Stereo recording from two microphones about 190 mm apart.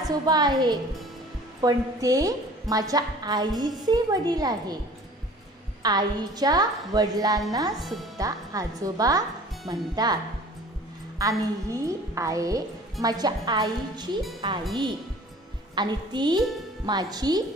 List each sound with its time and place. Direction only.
0.1 s a woman's voice: 20° right (ahead or behind)
5.8 s a woman's voice: 20° right (ahead or behind)
7.7 s speech: centre (ahead or behind)
8.2 s a woman's voice: 20° right (ahead or behind)
11.1 s a woman's voice: 15° right (ahead or behind)
15.7 s a woman's voice: 25° right (ahead or behind)